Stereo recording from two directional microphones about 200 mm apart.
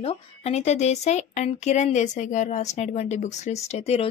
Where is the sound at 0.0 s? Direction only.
30° left (ahead or behind).